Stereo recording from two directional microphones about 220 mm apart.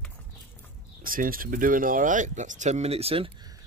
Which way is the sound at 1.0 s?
40° right (ahead or behind).